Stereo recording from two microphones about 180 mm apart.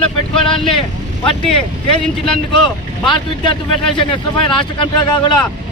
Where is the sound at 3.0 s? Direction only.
25° left (ahead or behind).